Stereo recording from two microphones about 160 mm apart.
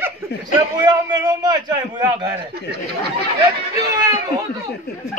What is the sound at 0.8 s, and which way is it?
A man's voice, 25° right (ahead or behind).